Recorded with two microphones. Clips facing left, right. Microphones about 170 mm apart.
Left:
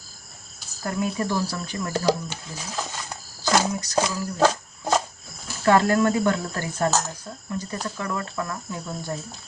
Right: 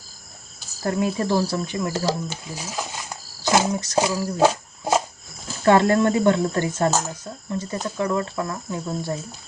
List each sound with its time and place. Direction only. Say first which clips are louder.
0.9 s speech: right 4 dB; 30° right (ahead or behind); by 3.0 s 10° right (ahead or behind)
3.4 s speech: right 2 dB; 20° right (ahead or behind)
4.0 s a sound: right 3 dB; 15° right (ahead or behind)
5.6 s speech: right 2 dB; 25° right (ahead or behind)